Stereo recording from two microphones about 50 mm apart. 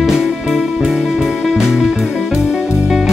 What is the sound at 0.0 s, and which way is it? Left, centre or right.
Music, centre.